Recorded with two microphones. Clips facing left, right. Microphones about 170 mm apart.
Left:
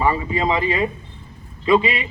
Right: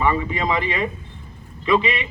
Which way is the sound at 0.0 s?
30° left (ahead or behind).